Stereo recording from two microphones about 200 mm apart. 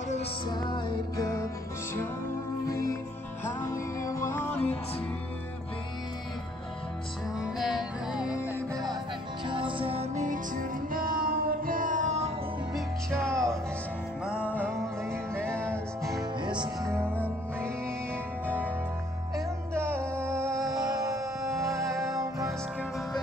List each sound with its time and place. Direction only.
0.5 s music: 20° left (ahead or behind)
2.6 s music: 15° left (ahead or behind)
7.5 s music: centre (ahead or behind)
9.5 s music: 25° right (ahead or behind)
13.3 s music: 15° right (ahead or behind)
14.8 s music: 15° right (ahead or behind)
16.4 s music: 20° right (ahead or behind)
19.3 s music: 10° right (ahead or behind)